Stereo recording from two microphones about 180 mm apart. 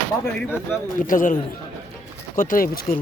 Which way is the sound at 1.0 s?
50° left (ahead or behind).